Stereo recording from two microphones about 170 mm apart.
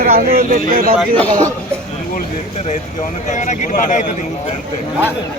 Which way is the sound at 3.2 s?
45° left (ahead or behind).